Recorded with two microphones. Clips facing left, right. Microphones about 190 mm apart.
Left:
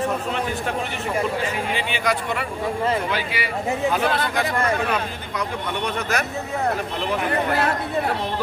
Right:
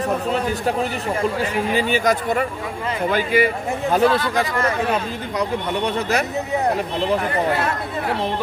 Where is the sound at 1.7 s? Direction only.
40° right (ahead or behind).